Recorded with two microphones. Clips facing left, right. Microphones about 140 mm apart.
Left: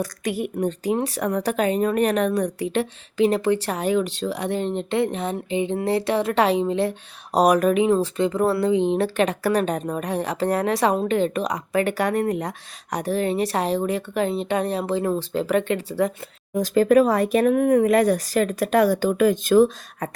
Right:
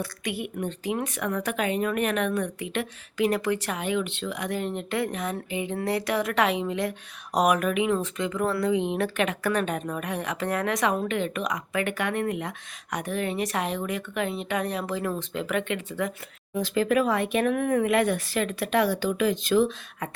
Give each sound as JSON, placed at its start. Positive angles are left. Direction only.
{"t": 0.0, "sound": "speech", "side_deg": 40}